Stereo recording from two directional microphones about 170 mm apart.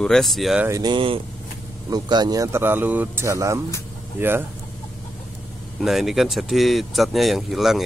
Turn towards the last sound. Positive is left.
turn(degrees=0)  # may be behind; listen again after turning